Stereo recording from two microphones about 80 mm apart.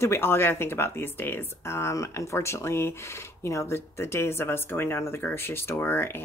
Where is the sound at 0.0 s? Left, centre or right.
Left.